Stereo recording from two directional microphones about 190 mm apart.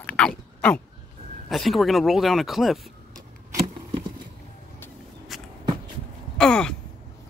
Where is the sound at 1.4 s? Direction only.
Centre (ahead or behind).